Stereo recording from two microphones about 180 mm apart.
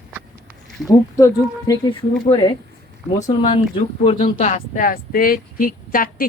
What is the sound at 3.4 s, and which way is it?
Speech, 30° left (ahead or behind).